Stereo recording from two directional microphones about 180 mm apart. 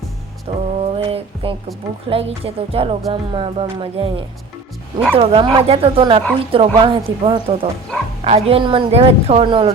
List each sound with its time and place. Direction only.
0.4 s a sound: 30° right (ahead or behind)
2.0 s a woman's voice: 35° right (ahead or behind)
5.1 s a woman's voice: 30° right (ahead or behind)